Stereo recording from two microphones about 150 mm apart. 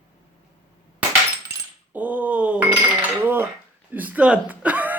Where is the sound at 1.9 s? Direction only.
10° right (ahead or behind).